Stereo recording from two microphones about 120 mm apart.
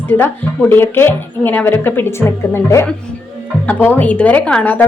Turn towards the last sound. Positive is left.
turn(degrees=15)  # may be behind; listen again after turning